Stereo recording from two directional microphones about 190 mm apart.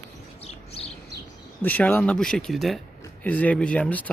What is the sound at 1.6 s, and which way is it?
Speech, 10° left (ahead or behind).